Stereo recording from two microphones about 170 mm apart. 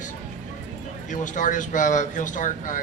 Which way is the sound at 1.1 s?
50° left (ahead or behind).